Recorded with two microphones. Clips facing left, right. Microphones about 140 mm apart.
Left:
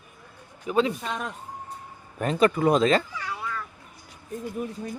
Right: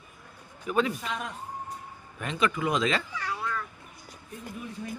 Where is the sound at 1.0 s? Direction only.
40° left (ahead or behind).